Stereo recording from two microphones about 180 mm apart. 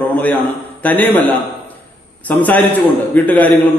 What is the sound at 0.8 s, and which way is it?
Speech, 10° left (ahead or behind).